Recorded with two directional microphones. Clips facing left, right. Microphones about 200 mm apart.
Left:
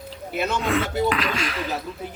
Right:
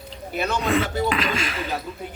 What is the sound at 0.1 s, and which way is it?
Speech, centre (ahead or behind).